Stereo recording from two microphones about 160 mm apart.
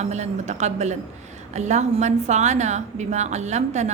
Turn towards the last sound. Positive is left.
turn(degrees=-45)  # may be behind; listen again after turning